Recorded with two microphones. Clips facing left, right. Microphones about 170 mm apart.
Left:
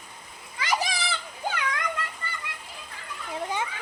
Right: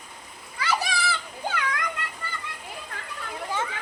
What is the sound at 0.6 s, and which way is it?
Children playing, 15° left (ahead or behind).